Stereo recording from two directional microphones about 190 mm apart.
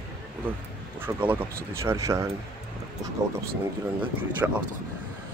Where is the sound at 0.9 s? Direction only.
10° right (ahead or behind).